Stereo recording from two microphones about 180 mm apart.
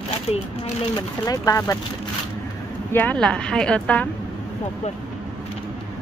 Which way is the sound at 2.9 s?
5° left (ahead or behind).